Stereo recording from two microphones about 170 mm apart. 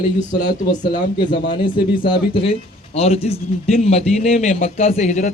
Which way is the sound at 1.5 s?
30° left (ahead or behind).